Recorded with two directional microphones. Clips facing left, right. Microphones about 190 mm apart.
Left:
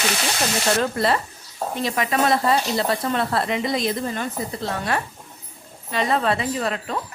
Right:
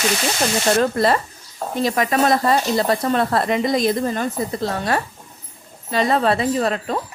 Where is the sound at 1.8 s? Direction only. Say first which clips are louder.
Right 4 dB; 40° right (ahead or behind).